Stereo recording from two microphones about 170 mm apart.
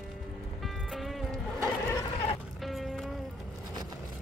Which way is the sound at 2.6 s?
Centre (ahead or behind).